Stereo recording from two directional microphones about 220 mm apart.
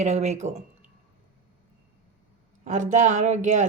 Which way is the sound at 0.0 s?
30° right (ahead or behind).